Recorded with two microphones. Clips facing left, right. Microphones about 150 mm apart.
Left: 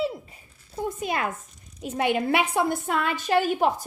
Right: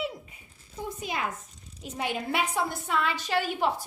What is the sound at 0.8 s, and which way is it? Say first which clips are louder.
A woman's voice: left 5 dB; 55° left (ahead or behind).